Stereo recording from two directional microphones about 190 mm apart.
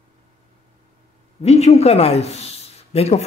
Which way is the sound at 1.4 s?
35° left (ahead or behind).